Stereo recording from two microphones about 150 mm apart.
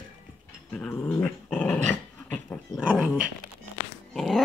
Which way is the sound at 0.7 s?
10° left (ahead or behind).